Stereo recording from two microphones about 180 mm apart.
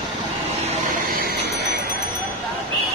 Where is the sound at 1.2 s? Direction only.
55° right (ahead or behind).